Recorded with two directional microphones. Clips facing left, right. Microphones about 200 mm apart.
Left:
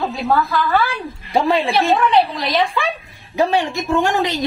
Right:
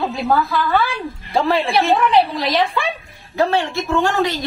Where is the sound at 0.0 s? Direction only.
Centre (ahead or behind).